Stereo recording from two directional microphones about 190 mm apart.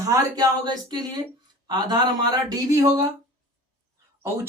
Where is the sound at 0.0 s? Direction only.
20° right (ahead or behind).